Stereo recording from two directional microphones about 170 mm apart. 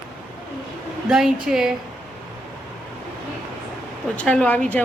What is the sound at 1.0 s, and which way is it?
Speech, 5° right (ahead or behind).